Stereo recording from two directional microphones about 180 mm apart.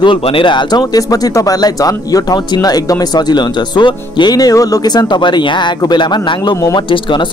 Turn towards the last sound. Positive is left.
turn(degrees=25)  # may be behind; listen again after turning